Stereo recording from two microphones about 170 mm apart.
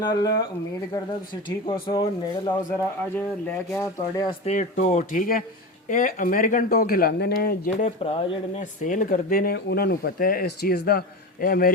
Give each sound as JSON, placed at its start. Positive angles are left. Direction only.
{"t": 0.1, "sound": "speech", "side_deg": 25}
{"t": 1.5, "sound": "speech", "side_deg": 30}
{"t": 3.2, "sound": "speech", "side_deg": 10}
{"t": 4.3, "sound": "speech", "side_deg": 40}
{"t": 8.0, "sound": "speech", "side_deg": 30}
{"t": 8.8, "sound": "speech", "side_deg": 50}